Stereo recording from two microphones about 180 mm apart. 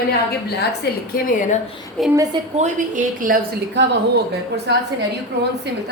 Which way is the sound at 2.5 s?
45° right (ahead or behind).